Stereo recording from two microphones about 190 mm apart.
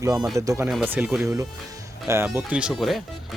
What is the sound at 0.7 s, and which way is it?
Speech, 5° right (ahead or behind).